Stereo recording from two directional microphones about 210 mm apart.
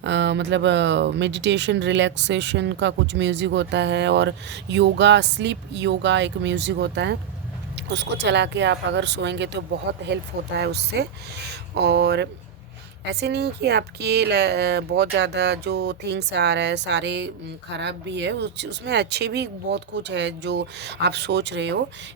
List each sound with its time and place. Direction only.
0.0 s speech: 55° right (ahead or behind)